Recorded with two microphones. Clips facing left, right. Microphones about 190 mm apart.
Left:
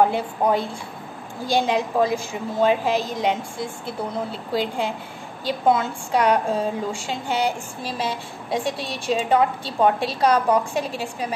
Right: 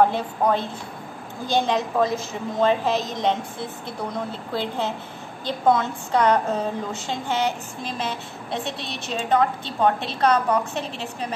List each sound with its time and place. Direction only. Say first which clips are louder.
0.0 s a woman's voice: even; 10° left (ahead or behind)